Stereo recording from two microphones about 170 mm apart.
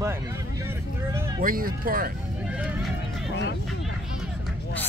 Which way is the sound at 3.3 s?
90° left.